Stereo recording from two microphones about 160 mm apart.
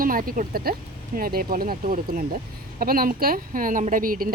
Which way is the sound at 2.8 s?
65° right (ahead or behind).